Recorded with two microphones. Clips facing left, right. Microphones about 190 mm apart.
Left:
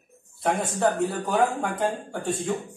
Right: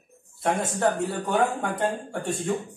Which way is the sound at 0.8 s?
Centre (ahead or behind).